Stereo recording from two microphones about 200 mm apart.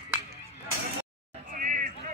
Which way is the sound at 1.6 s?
40° right (ahead or behind).